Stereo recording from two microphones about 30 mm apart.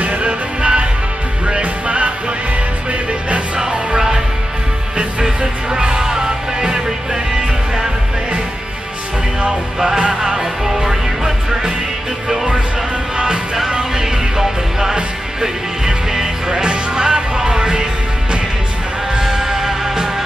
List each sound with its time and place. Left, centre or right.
0.2 s music: right
5.2 s music: right
10.2 s music: centre
13.7 s music: right
19.1 s music: centre